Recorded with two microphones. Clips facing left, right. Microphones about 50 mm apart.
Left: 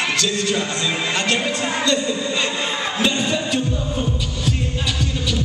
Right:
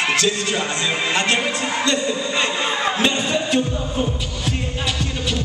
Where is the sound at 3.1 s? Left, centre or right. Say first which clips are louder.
Right 1 dB; centre.